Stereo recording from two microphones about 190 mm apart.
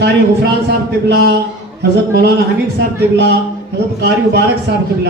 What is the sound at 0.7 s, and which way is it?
A man's voice, 60° right (ahead or behind).